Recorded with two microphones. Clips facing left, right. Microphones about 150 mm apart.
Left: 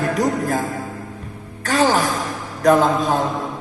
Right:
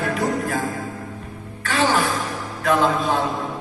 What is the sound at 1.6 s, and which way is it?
Music, 40° left (ahead or behind).